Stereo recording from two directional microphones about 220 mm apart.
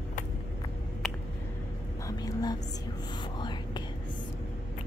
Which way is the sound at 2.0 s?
15° left (ahead or behind).